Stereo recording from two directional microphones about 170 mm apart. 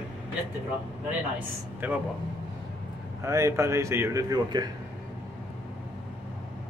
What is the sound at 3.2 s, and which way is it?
A man's voice, 20° right (ahead or behind).